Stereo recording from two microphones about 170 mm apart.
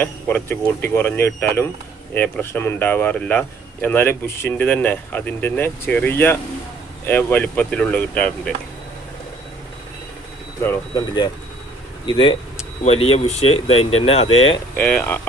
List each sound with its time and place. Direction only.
0.0 s speech: 10° left (ahead or behind)
10.9 s speech: 25° left (ahead or behind)
14.8 s speech: 10° left (ahead or behind)